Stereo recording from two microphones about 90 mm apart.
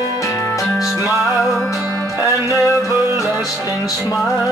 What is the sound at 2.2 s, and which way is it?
Music, 35° left (ahead or behind).